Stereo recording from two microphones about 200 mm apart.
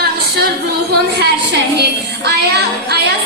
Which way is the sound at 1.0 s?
55° right (ahead or behind).